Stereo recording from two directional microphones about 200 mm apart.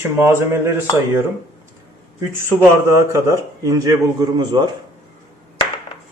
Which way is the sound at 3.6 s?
15° right (ahead or behind).